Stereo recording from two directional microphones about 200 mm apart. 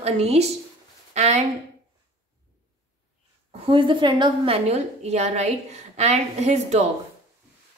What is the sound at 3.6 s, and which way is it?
A woman's voice, 25° right (ahead or behind).